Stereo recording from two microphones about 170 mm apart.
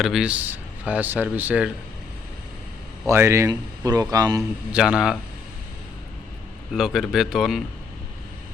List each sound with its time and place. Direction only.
0.0 s speech: 5° right (ahead or behind)
3.1 s speech: 15° right (ahead or behind)
4.7 s a man's voice: 5° right (ahead or behind)
6.7 s a man's voice: centre (ahead or behind)